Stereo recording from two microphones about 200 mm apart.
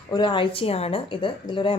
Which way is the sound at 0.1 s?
25° left (ahead or behind).